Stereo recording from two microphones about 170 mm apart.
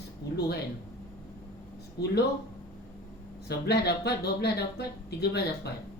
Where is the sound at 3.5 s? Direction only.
75° left (ahead or behind).